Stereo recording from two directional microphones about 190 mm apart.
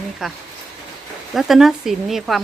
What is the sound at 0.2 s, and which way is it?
Speech, centre (ahead or behind).